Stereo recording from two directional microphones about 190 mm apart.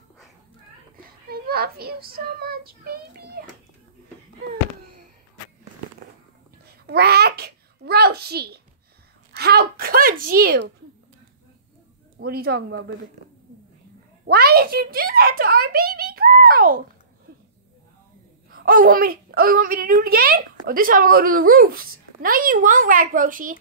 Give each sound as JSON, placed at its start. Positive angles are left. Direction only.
{"t": 0.9, "sound": "speech", "side_deg": -55}
{"t": 6.9, "sound": "babbling", "side_deg": -55}
{"t": 9.3, "sound": "speech", "side_deg": -55}
{"t": 12.2, "sound": "speech", "side_deg": -55}
{"t": 14.2, "sound": "a woman's voice", "side_deg": -55}
{"t": 18.5, "sound": "a woman's voice", "side_deg": -50}